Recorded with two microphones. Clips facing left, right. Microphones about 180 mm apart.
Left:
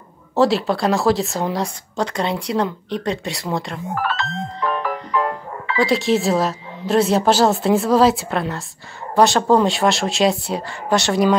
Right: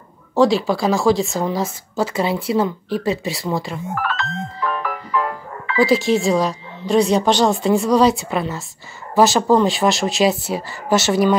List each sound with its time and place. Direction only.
0.4 s speech: centre (ahead or behind)
3.9 s music: 30° left (ahead or behind)
5.8 s speech: centre (ahead or behind)